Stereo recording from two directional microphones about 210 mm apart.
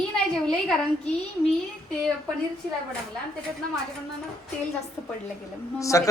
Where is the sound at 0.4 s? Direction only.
5° left (ahead or behind).